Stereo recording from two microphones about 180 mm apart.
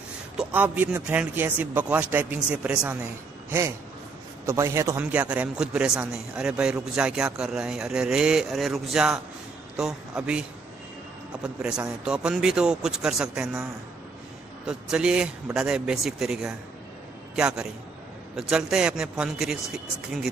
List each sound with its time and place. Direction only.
0.4 s a man's voice: 10° right (ahead or behind)
11.4 s a man's voice: 5° right (ahead or behind)
14.7 s a man's voice: 5° right (ahead or behind)